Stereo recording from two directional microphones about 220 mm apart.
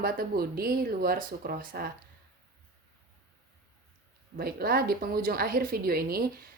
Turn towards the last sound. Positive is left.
turn(degrees=-45)  # may be behind; listen again after turning